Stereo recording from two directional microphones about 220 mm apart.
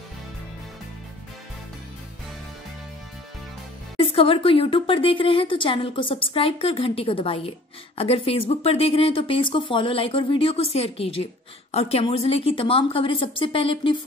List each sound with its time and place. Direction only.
4.0 s speech: 25° left (ahead or behind)